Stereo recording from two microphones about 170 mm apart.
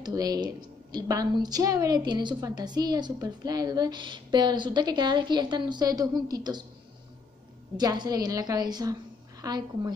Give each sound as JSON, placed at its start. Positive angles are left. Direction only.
{"t": 0.0, "sound": "a woman's voice", "side_deg": -20}
{"t": 7.7, "sound": "a woman's voice", "side_deg": -25}